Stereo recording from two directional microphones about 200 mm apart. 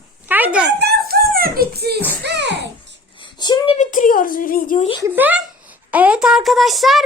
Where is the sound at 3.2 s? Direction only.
20° left (ahead or behind).